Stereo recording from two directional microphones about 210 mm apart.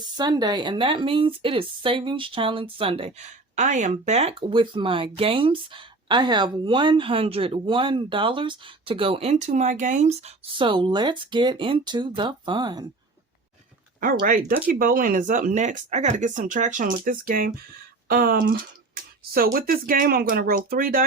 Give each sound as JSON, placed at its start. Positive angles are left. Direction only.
{"t": 0.2, "sound": "speech", "side_deg": -20}
{"t": 14.0, "sound": "speech", "side_deg": -40}
{"t": 18.1, "sound": "a sound", "side_deg": -45}
{"t": 19.5, "sound": "speech", "side_deg": -45}